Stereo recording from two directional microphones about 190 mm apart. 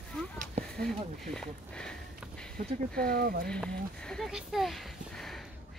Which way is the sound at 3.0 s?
50° right (ahead or behind).